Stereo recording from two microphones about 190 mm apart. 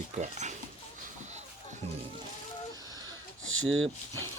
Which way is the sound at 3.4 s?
90° right.